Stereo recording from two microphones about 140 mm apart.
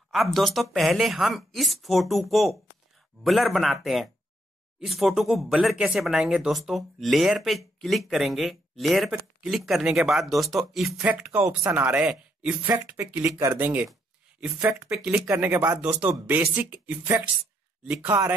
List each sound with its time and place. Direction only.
0.1 s speech: centre (ahead or behind)